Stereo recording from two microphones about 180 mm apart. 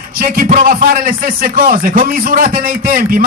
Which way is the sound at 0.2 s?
50° right (ahead or behind).